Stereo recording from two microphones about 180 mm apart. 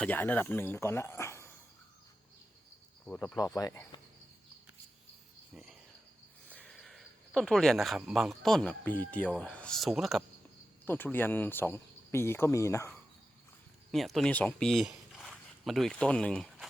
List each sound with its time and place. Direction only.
0.0 s speech: 10° left (ahead or behind)
3.1 s speech: 10° left (ahead or behind)
3.3 s speech: 20° left (ahead or behind)
6.5 s speech: 5° left (ahead or behind)
10.8 s speech: 10° left (ahead or behind)
13.9 s speech: centre (ahead or behind)